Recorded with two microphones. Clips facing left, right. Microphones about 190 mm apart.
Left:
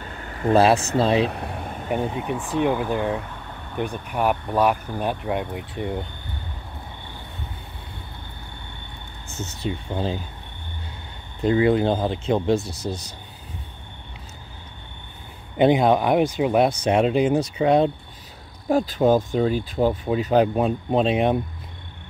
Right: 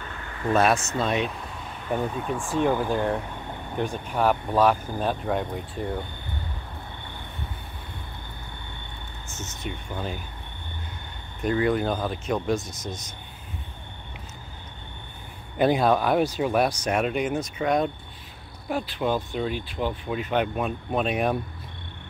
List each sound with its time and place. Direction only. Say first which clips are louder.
0.0 s a sound: left 4 dB; 35° left (ahead or behind)
0.9 s speech: left 6 dB; 30° left (ahead or behind)
1.3 s vehicle: left 6 dB; 60° left (ahead or behind)
1.9 s speech: left 2 dB; 15° left (ahead or behind)
2.7 s speech: left 1 dB; 5° left (ahead or behind)
5.8 s speech: left 3 dB; 20° left (ahead or behind)
9.6 s speech: left 6 dB; 30° left (ahead or behind)
11.4 s speech: left 5 dB; 25° left (ahead or behind)
15.5 s speech: left 4 dB; 20° left (ahead or behind)